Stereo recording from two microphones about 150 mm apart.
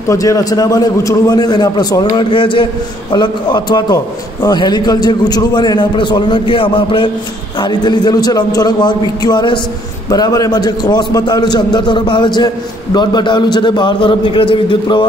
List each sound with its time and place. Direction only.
0.1 s a man's voice: 20° left (ahead or behind)